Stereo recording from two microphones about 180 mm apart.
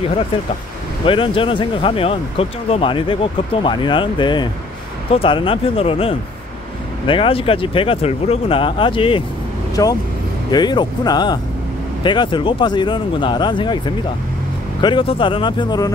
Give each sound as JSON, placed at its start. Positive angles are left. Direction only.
{"t": 1.0, "sound": "speech", "side_deg": 30}